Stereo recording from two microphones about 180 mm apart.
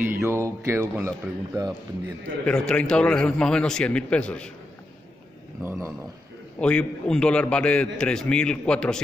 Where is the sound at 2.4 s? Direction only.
5° left (ahead or behind).